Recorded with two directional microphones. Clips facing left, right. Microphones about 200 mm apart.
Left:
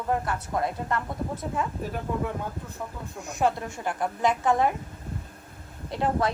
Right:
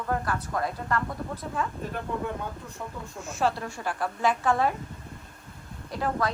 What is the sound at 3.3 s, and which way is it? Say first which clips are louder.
A woman's voice: left 2 dB; 15° left (ahead or behind).